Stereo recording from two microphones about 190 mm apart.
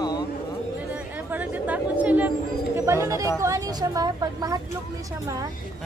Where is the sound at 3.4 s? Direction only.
20° right (ahead or behind).